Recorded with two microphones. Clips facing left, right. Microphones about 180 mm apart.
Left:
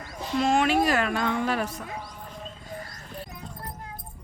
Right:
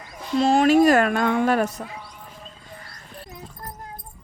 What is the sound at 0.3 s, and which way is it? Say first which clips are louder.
A woman's voice: right 6 dB; 35° right (ahead or behind).